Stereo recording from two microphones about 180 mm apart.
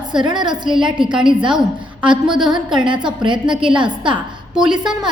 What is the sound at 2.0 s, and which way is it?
A woman's voice, 25° right (ahead or behind).